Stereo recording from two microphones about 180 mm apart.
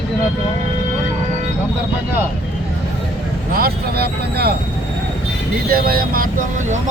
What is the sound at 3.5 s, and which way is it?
Speech, 60° right (ahead or behind).